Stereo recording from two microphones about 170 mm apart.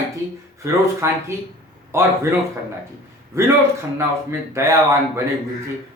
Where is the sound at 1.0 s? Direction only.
15° right (ahead or behind).